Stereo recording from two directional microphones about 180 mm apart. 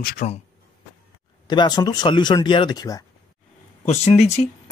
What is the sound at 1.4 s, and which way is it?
Speech, 25° left (ahead or behind).